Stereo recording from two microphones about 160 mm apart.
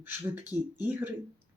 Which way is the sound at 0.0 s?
10° right (ahead or behind).